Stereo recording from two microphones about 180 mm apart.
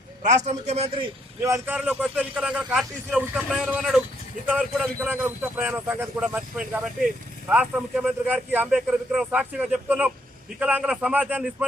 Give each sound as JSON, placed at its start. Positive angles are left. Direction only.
{"t": 0.2, "sound": "a man's voice", "side_deg": -40}
{"t": 1.4, "sound": "a man's voice", "side_deg": -15}